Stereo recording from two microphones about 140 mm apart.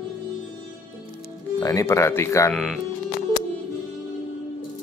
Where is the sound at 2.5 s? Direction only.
Centre (ahead or behind).